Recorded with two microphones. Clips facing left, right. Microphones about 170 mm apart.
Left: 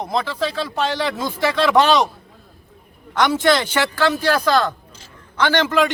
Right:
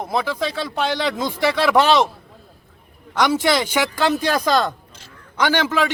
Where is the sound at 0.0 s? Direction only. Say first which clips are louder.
Even; 10° right (ahead or behind).